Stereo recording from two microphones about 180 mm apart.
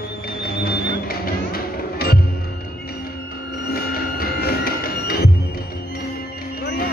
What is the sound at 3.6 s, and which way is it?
Music, 55° left (ahead or behind).